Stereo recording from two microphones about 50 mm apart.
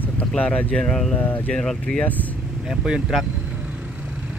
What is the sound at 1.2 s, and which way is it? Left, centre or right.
Speech, left.